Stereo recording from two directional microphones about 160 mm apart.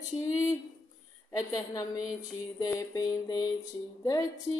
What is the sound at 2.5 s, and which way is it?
Music, 20° left (ahead or behind).